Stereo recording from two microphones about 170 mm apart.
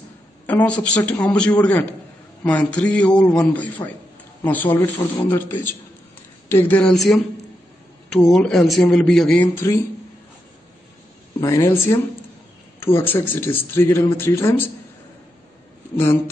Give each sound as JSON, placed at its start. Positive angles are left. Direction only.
{"t": 0.5, "sound": "speech", "side_deg": 10}
{"t": 8.3, "sound": "speech", "side_deg": 5}
{"t": 11.4, "sound": "speech", "side_deg": 15}